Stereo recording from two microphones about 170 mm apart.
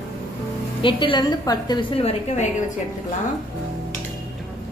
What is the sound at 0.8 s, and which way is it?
A woman's voice, 30° left (ahead or behind).